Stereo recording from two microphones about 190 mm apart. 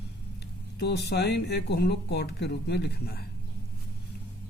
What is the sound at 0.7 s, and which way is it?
Speech, 60° left (ahead or behind).